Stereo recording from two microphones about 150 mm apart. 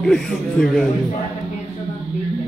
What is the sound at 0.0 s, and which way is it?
Mantra, 5° left (ahead or behind).